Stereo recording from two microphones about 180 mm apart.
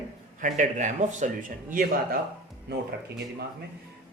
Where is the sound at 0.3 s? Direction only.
45° right (ahead or behind).